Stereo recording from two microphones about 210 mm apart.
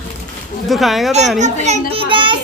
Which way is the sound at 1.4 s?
35° right (ahead or behind).